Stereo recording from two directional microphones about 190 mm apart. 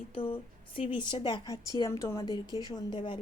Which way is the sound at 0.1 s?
25° left (ahead or behind).